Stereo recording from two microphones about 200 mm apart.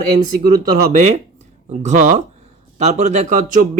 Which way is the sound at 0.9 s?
35° right (ahead or behind).